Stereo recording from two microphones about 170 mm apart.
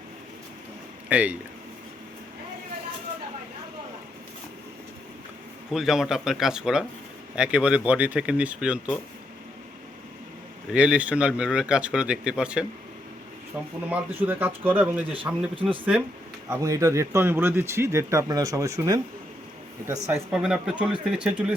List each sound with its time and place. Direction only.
1.1 s speech: 10° right (ahead or behind)
5.7 s speech: centre (ahead or behind)
10.7 s speech: 5° right (ahead or behind)
13.9 s speech: 10° right (ahead or behind)
16.5 s speech: 20° right (ahead or behind)
20.1 s speech: 15° right (ahead or behind)